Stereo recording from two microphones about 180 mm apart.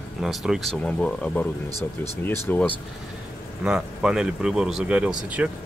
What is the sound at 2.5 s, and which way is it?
Speech, 10° left (ahead or behind).